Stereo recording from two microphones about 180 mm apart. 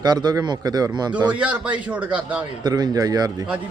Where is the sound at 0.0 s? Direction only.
25° right (ahead or behind).